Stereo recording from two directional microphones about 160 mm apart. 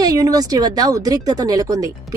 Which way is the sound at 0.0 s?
25° right (ahead or behind).